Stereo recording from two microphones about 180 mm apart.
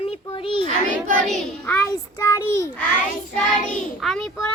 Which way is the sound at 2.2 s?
15° left (ahead or behind).